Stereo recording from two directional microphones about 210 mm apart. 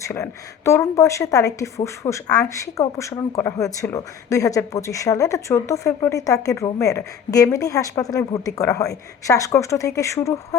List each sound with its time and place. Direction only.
0.0 s speech: 15° left (ahead or behind)